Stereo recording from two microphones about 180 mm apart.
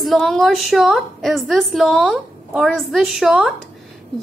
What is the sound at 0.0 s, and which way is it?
A woman's voice, centre (ahead or behind).